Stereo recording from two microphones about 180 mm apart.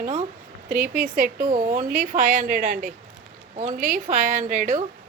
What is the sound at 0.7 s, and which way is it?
Speech, 10° right (ahead or behind).